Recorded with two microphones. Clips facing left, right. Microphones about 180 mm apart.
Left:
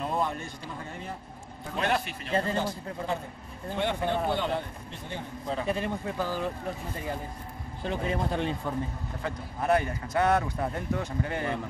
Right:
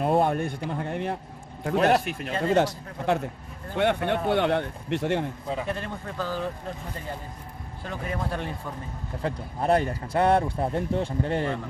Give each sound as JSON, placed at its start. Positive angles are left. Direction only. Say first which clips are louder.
{"t": 0.0, "sound": "a man's voice", "louder": "right 8 dB", "side_deg": -60}
{"t": 1.8, "sound": "a man's voice", "louder": "right 7 dB", "side_deg": -45}
{"t": 2.5, "sound": "speech", "louder": "right 8 dB", "side_deg": -75}
{"t": 3.7, "sound": "speech", "louder": "right 4 dB", "side_deg": -65}
{"t": 5.7, "sound": "a man's voice", "louder": "left 2 dB", "side_deg": 10}
{"t": 7.8, "sound": "speech", "louder": "left 2 dB", "side_deg": 20}
{"t": 9.2, "sound": "a man's voice", "louder": "right 5 dB", "side_deg": -30}